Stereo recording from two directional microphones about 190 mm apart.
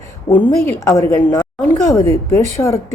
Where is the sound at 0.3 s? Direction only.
15° left (ahead or behind).